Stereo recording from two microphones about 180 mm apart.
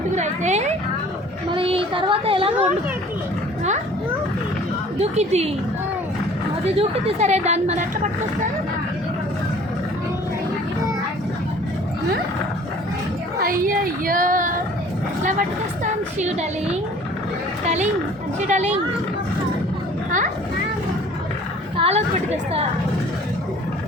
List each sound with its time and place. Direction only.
0.2 s a woman's voice: 40° right (ahead or behind)
4.9 s a woman's voice: 35° right (ahead or behind)
6.7 s a woman's voice: 35° right (ahead or behind)
13.4 s a woman's voice: 50° right (ahead or behind)
21.8 s a woman's voice: 35° right (ahead or behind)